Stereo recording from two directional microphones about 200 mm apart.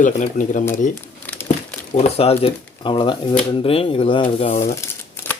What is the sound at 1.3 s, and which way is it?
Crumpling, 10° left (ahead or behind).